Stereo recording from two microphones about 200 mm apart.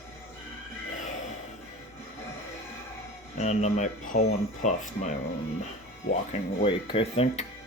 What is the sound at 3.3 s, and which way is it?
Speech, 35° left (ahead or behind).